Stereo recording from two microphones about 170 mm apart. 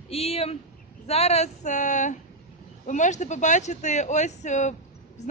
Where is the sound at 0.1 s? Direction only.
35° left (ahead or behind).